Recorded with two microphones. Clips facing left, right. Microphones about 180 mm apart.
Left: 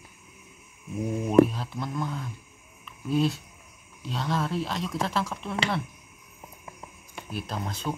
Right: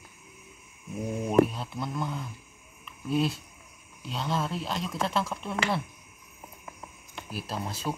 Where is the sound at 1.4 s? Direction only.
Centre (ahead or behind).